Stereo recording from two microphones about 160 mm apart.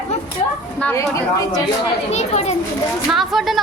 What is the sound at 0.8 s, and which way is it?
Speech, 15° left (ahead or behind).